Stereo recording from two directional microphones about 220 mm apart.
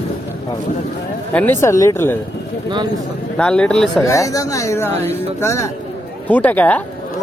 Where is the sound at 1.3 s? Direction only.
10° left (ahead or behind).